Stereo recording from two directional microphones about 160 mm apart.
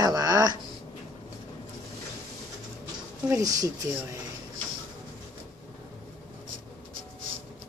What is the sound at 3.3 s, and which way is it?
Speech, 20° right (ahead or behind).